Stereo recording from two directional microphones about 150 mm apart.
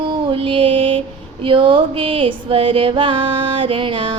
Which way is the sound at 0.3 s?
35° right (ahead or behind).